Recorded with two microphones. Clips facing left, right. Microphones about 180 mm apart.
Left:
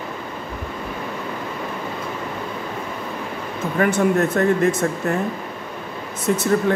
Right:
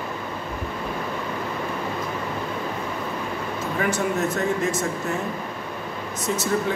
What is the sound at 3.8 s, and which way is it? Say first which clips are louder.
Speech: left 6 dB; 55° left (ahead or behind).